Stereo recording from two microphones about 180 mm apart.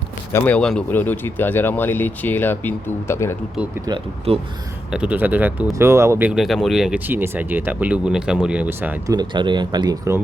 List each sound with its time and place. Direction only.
0.3 s speech: 10° left (ahead or behind)
3.8 s speech: 25° right (ahead or behind)
4.9 s speech: 5° right (ahead or behind)
9.1 s speech: 25° right (ahead or behind)